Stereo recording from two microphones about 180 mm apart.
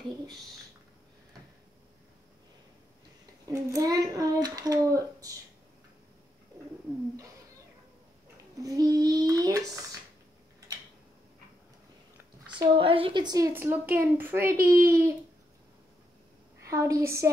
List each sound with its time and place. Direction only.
3.4 s child singing: 20° right (ahead or behind)
8.5 s child singing: 20° right (ahead or behind)
12.5 s a woman's voice: 30° right (ahead or behind); by 15.1 s 15° right (ahead or behind)
16.6 s a woman's voice: 15° right (ahead or behind)